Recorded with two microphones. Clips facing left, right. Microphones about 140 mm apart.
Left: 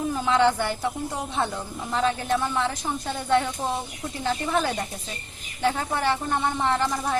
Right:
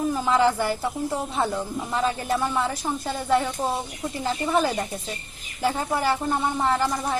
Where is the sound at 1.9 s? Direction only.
5° right (ahead or behind).